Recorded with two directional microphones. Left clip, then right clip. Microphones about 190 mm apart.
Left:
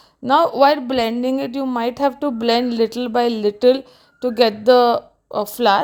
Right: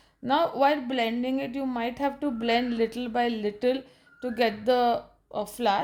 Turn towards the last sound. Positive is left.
turn(degrees=40)  # may be behind; listen again after turning